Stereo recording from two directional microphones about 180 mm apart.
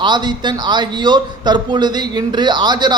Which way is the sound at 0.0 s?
25° right (ahead or behind).